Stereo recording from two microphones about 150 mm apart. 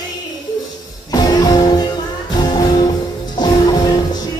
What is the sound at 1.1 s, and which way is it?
Music, 25° left (ahead or behind).